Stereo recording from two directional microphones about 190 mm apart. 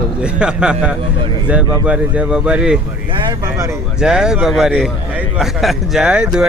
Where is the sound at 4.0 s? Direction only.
5° right (ahead or behind).